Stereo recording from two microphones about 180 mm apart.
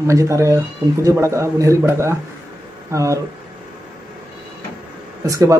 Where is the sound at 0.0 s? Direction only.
15° right (ahead or behind).